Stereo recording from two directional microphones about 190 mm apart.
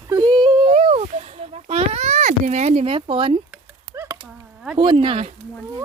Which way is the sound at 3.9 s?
10° right (ahead or behind).